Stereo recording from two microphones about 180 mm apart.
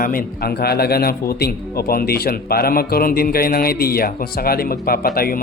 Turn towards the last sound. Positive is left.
turn(degrees=55)  # may be behind; listen again after turning